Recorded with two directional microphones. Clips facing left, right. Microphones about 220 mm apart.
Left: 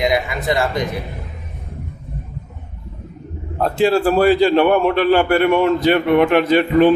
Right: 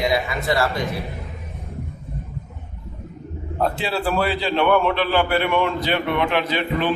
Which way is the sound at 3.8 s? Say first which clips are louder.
Left 14 dB; 45° left (ahead or behind).